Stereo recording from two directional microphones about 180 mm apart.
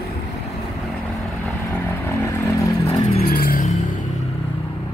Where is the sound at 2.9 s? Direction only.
35° left (ahead or behind).